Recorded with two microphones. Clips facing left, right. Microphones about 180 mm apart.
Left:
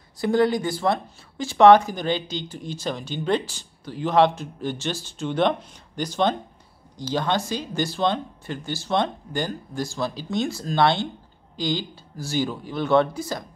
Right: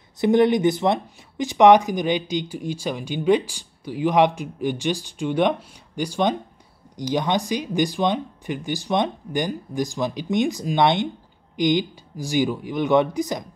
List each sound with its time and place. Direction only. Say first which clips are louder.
0.2 s speech: right 4 dB; 20° right (ahead or behind)